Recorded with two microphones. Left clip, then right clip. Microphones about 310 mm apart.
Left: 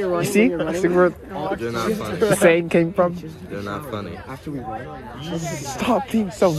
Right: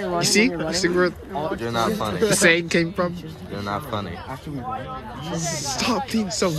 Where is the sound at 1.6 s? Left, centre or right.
Centre.